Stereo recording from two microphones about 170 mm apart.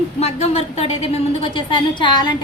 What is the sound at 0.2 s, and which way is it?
A woman's voice, 40° left (ahead or behind).